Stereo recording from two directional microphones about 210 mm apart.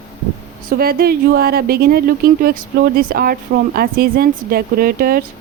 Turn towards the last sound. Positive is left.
turn(degrees=-45)  # may be behind; listen again after turning